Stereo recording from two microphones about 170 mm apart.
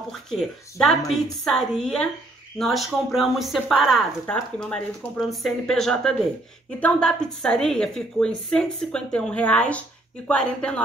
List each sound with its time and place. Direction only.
0.1 s a woman's voice: centre (ahead or behind)